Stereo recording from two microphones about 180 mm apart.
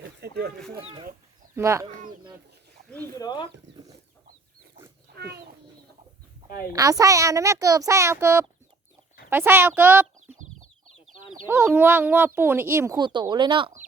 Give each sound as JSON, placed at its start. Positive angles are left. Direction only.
{"t": 0.2, "sound": "a sound", "side_deg": -60}
{"t": 0.8, "sound": "speech", "side_deg": -35}
{"t": 1.5, "sound": "speech", "side_deg": -15}
{"t": 3.2, "sound": "speech", "side_deg": 20}
{"t": 3.7, "sound": "chicken", "side_deg": -75}
{"t": 5.1, "sound": "a child's voice", "side_deg": -65}
{"t": 6.7, "sound": "speech", "side_deg": -20}
{"t": 11.4, "sound": "speech", "side_deg": -10}